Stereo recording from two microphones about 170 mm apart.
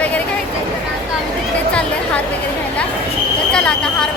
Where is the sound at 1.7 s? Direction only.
5° left (ahead or behind).